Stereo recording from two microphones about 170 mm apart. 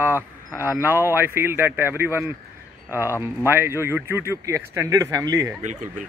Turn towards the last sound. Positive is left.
turn(degrees=-20)  # may be behind; listen again after turning